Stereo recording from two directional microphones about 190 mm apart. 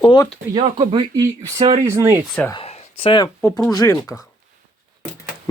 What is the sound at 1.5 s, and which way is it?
Speech, 35° right (ahead or behind).